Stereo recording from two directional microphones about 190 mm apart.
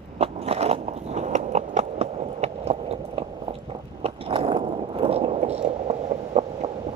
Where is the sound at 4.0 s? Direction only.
30° right (ahead or behind).